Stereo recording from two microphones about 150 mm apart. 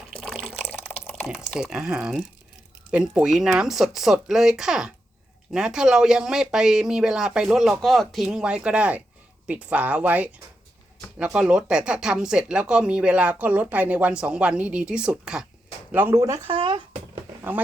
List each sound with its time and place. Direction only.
1.4 s speech: 5° right (ahead or behind)
16.1 s speech: 25° right (ahead or behind)
16.6 s a sound: 35° right (ahead or behind)